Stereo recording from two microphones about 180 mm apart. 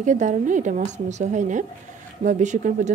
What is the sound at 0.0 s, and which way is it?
Speech, 45° right (ahead or behind).